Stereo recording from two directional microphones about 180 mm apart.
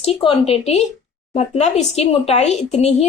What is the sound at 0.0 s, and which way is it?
A woman's voice, 30° left (ahead or behind).